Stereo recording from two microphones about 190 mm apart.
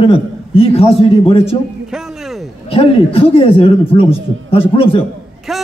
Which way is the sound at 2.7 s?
30° left (ahead or behind).